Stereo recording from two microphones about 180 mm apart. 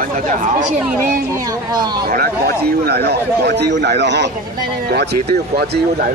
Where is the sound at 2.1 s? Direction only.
55° right (ahead or behind).